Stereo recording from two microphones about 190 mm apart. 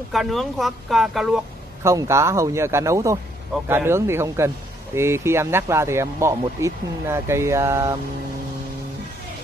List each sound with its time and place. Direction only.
0.1 s speech: centre (ahead or behind)
1.8 s speech: 15° right (ahead or behind)